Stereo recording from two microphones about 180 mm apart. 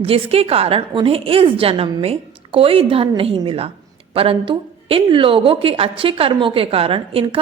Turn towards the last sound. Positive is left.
turn(degrees=-30)  # may be behind; listen again after turning